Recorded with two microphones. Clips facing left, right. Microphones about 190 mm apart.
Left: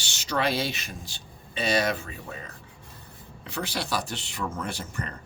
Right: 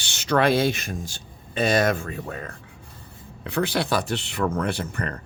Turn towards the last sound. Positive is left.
turn(degrees=-60)  # may be behind; listen again after turning